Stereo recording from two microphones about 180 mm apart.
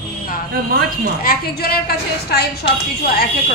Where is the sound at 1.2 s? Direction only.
55° left (ahead or behind).